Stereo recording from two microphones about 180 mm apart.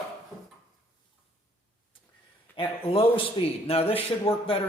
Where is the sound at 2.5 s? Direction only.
30° left (ahead or behind).